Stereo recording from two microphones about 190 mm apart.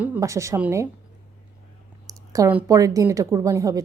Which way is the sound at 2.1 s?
15° right (ahead or behind).